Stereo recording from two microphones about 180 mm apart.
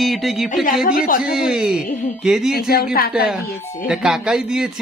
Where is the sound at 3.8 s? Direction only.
Centre (ahead or behind).